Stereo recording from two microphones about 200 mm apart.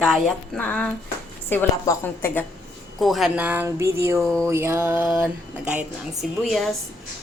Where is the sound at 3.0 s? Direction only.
Centre (ahead or behind).